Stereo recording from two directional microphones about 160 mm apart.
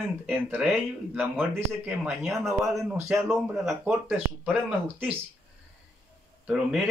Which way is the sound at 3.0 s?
15° right (ahead or behind).